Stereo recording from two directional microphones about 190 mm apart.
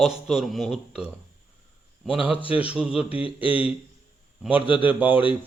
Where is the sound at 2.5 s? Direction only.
5° right (ahead or behind).